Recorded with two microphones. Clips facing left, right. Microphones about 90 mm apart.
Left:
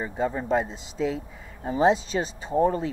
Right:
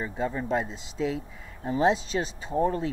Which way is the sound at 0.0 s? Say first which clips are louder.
Left 2 dB; 35° left (ahead or behind).